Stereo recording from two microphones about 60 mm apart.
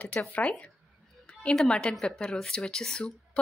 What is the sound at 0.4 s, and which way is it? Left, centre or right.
Speech, centre.